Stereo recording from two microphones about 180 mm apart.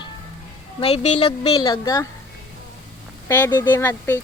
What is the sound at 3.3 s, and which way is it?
Speech, 15° left (ahead or behind).